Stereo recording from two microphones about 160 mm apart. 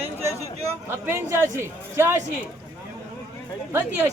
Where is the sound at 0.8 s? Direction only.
15° right (ahead or behind).